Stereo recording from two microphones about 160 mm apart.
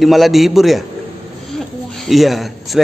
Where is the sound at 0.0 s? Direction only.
Centre (ahead or behind).